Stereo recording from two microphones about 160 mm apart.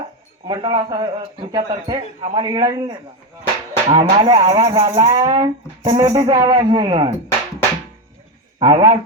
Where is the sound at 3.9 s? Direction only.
25° right (ahead or behind).